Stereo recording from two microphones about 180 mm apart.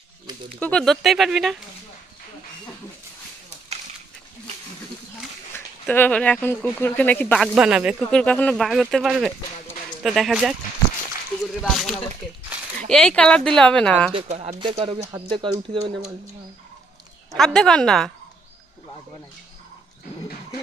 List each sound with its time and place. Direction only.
0.6 s speech: 5° left (ahead or behind)
5.5 s speech: 10° left (ahead or behind)
11.6 s speech: centre (ahead or behind)
14.1 s speech: 35° right (ahead or behind)
17.3 s speech: 5° left (ahead or behind)